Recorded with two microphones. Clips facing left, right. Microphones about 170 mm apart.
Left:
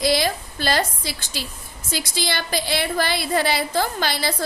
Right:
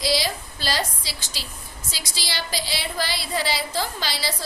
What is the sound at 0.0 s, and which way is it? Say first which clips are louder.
A woman's voice: left 4 dB; 55° left (ahead or behind).